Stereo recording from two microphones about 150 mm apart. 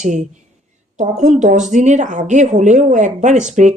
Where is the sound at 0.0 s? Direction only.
55° right (ahead or behind).